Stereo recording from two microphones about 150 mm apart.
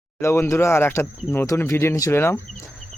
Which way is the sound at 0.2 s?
20° left (ahead or behind).